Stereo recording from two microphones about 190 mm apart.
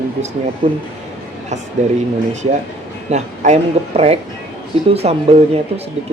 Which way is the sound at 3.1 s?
35° right (ahead or behind).